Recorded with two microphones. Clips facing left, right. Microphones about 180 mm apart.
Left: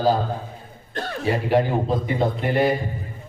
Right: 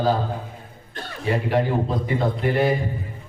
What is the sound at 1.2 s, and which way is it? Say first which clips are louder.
A man's voice: left 1 dB; 30° left (ahead or behind).